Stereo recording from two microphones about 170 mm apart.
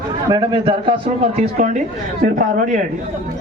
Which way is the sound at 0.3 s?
25° right (ahead or behind).